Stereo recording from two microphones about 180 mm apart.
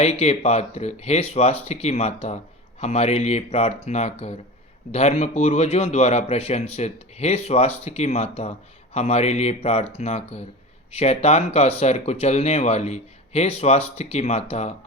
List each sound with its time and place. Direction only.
0.0 s a man's voice: 35° left (ahead or behind)